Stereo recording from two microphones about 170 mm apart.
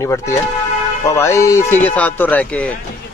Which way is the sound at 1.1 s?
15° left (ahead or behind).